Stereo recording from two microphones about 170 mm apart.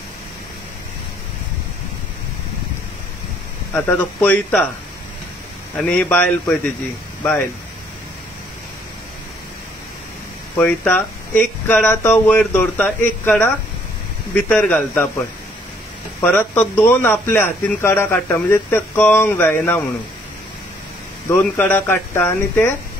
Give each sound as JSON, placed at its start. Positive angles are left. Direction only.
{"t": 3.7, "sound": "a man's voice", "side_deg": 10}
{"t": 5.8, "sound": "a man's voice", "side_deg": 5}
{"t": 10.6, "sound": "a man's voice", "side_deg": 10}
{"t": 16.3, "sound": "a man's voice", "side_deg": 10}
{"t": 21.3, "sound": "a man's voice", "side_deg": 10}